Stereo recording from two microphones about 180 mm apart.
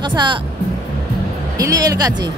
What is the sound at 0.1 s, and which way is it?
Music, 25° right (ahead or behind).